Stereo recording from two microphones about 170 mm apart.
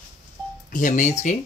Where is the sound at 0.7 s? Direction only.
50° left (ahead or behind).